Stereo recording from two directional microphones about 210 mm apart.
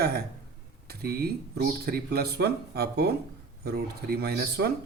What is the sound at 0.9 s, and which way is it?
Speech, 50° right (ahead or behind).